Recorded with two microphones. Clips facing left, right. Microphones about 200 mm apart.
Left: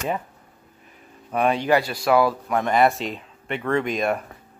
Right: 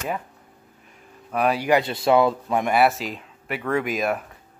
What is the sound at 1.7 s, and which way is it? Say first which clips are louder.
Speech: right 3 dB; 20° right (ahead or behind).